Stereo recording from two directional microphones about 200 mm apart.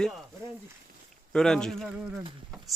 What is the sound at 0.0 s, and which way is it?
Speech, centre (ahead or behind).